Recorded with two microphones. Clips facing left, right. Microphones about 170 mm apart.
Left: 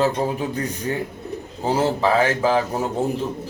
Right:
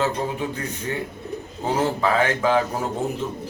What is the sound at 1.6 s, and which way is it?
Speech, 30° left (ahead or behind).